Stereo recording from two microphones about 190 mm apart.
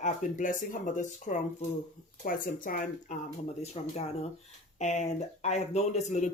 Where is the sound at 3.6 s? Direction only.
35° left (ahead or behind).